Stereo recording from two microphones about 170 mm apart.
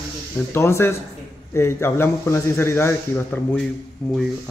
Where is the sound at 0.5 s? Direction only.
15° left (ahead or behind).